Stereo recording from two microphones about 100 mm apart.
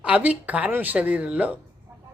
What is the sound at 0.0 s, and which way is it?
A woman's voice, 15° right (ahead or behind).